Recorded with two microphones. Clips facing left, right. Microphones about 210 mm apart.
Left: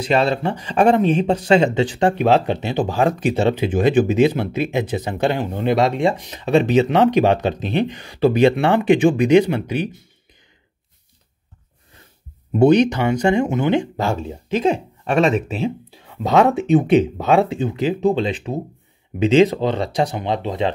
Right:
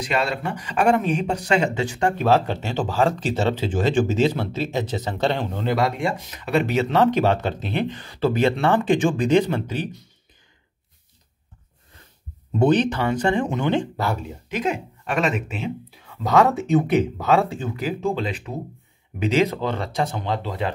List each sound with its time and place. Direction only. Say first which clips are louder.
0.0 s speech: left 6 dB; 30° left (ahead or behind); by 9.8 s 10° left (ahead or behind)
12.5 s speech: left 5 dB; 15° left (ahead or behind)
14.0 s speech: left 4 dB; 25° left (ahead or behind)
16.1 s speech: left 3 dB; 25° left (ahead or behind)